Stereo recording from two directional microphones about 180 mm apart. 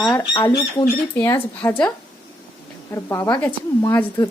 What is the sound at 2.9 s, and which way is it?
A woman's voice, 15° left (ahead or behind).